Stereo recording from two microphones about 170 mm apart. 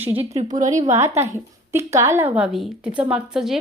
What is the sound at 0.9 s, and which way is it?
A woman's voice, 15° right (ahead or behind).